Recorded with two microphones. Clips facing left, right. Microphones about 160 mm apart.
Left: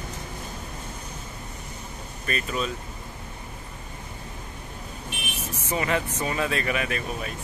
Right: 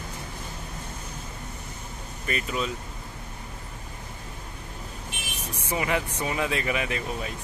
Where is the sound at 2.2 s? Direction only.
20° right (ahead or behind).